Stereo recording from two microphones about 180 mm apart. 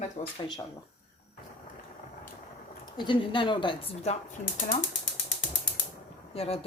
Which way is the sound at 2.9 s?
25° left (ahead or behind).